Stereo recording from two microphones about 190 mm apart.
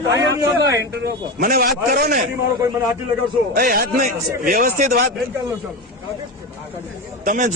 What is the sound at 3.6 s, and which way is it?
Speech, 45° right (ahead or behind).